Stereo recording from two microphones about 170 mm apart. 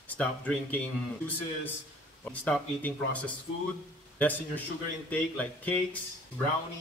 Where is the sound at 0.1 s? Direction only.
10° left (ahead or behind).